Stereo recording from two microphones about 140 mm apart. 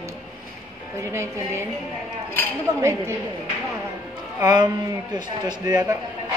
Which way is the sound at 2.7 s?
25° right (ahead or behind).